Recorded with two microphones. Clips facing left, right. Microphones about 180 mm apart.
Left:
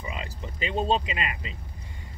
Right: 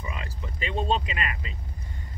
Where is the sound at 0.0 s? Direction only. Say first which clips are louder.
Left 1 dB; 25° left (ahead or behind).